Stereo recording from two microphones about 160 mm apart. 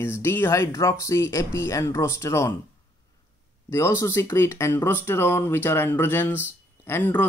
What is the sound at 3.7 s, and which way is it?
Speech, 20° left (ahead or behind).